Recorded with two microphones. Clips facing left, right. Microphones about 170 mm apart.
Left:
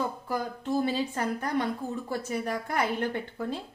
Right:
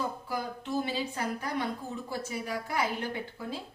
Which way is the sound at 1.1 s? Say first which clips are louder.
Left 4 dB; 50° left (ahead or behind).